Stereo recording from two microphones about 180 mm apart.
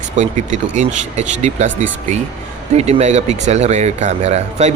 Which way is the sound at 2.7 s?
35° right (ahead or behind).